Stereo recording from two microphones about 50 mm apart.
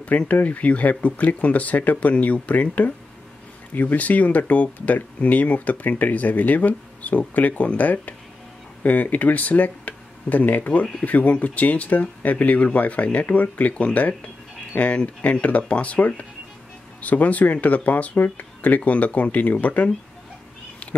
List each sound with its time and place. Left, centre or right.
0.3 s speech: left